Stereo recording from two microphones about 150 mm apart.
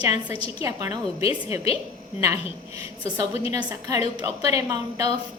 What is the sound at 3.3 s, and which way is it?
A woman's voice, 20° right (ahead or behind).